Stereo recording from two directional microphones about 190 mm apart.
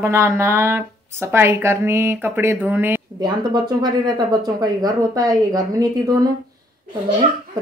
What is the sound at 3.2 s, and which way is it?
Speech, 20° right (ahead or behind).